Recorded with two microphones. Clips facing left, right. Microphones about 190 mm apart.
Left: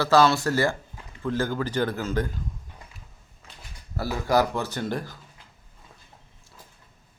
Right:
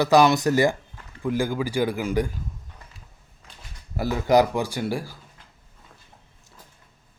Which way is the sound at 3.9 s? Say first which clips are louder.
Right 4 dB; 15° right (ahead or behind).